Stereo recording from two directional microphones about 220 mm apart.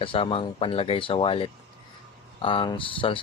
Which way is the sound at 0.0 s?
25° left (ahead or behind).